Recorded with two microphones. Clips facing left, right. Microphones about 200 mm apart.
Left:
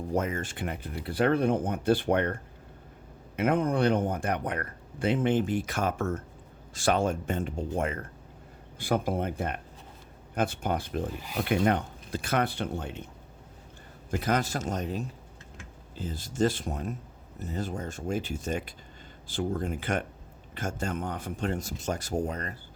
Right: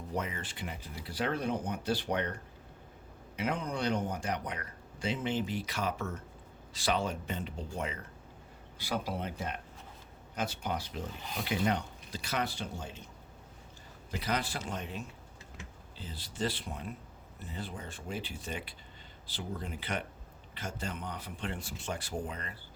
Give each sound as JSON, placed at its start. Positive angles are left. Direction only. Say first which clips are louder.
{"t": 0.1, "sound": "speech", "louder": "left 7 dB", "side_deg": 45}
{"t": 14.1, "sound": "speech", "louder": "left 7 dB", "side_deg": 50}